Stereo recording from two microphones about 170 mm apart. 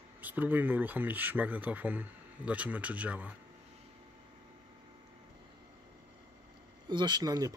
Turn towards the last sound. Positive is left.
turn(degrees=-20)  # may be behind; listen again after turning